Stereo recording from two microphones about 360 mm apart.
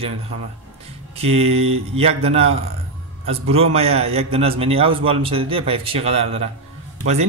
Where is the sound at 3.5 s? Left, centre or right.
Centre.